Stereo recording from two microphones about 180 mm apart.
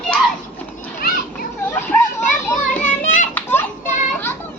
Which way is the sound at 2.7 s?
45° left (ahead or behind).